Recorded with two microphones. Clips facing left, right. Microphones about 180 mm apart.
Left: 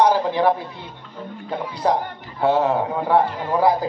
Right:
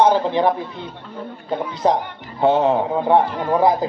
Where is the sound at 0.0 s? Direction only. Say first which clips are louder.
Right 2 dB; 20° right (ahead or behind).